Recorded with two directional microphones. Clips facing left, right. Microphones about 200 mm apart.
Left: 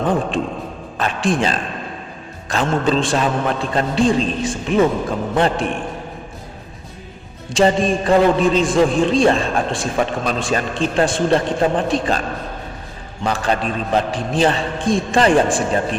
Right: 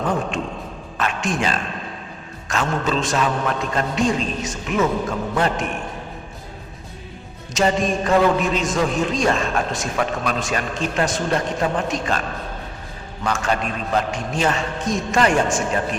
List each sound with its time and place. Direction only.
0.0 s a man's voice: 30° left (ahead or behind)
7.5 s a man's voice: 30° left (ahead or behind)
13.2 s a man's voice: 35° left (ahead or behind)